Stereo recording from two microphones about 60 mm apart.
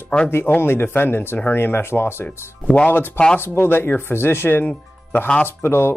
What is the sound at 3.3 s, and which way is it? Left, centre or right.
Speech, left.